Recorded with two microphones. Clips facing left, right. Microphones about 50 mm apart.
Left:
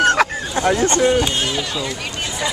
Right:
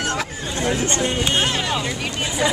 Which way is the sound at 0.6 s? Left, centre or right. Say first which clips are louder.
Left 5 dB; left.